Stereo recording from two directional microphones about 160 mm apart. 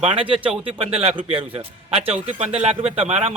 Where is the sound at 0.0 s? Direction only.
35° right (ahead or behind).